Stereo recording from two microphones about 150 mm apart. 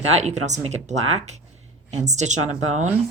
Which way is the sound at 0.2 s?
50° right (ahead or behind).